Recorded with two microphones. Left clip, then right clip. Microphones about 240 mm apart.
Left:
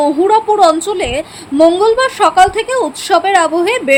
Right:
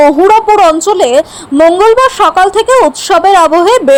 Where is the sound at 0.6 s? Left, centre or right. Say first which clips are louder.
Right 4 dB; centre.